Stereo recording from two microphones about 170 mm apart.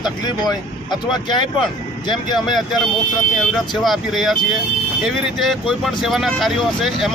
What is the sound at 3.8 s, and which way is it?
Speech, centre (ahead or behind).